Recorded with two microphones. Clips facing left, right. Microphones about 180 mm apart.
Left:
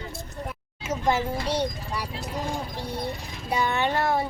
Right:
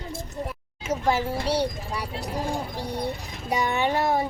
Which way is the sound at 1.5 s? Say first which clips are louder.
Right 2 dB; 10° right (ahead or behind).